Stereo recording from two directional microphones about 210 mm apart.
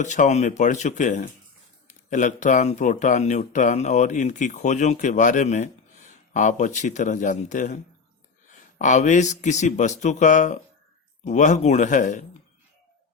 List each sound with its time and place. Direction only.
0.0 s speech: 35° left (ahead or behind)
8.8 s speech: 35° left (ahead or behind)